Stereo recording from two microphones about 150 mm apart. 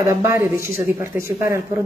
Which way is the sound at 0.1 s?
20° right (ahead or behind).